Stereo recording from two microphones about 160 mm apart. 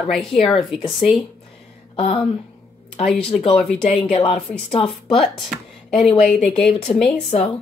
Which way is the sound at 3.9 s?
35° left (ahead or behind).